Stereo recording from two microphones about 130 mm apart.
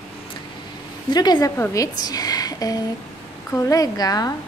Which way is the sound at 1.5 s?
20° left (ahead or behind).